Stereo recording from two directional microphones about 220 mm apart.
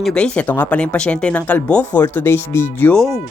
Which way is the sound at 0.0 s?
5° left (ahead or behind).